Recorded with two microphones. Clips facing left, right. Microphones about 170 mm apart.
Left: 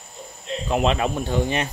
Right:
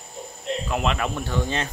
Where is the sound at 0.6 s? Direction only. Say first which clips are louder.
Left 6 dB; 25° left (ahead or behind).